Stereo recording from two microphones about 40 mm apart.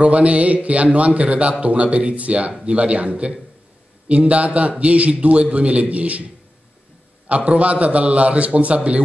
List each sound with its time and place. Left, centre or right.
0.0 s a man's voice: right
7.2 s a man's voice: right